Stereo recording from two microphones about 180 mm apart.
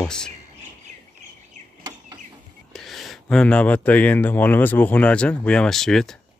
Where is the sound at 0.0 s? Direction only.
5° left (ahead or behind).